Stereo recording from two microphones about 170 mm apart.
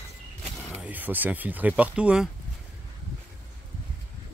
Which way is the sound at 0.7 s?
10° right (ahead or behind).